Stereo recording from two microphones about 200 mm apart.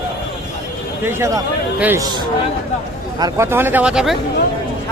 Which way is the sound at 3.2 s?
15° right (ahead or behind).